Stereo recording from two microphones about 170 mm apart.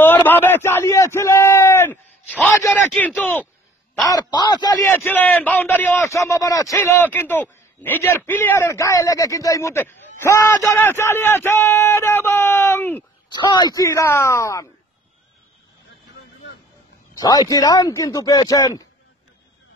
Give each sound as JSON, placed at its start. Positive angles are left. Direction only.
{"t": 0.0, "sound": "a sound", "side_deg": 10}
{"t": 3.2, "sound": "speech", "side_deg": 10}
{"t": 4.1, "sound": "speech", "side_deg": 25}
{"t": 13.3, "sound": "speech", "side_deg": 25}
{"t": 17.1, "sound": "speech", "side_deg": 20}